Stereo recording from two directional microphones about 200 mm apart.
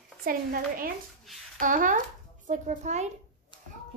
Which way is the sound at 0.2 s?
45° right (ahead or behind).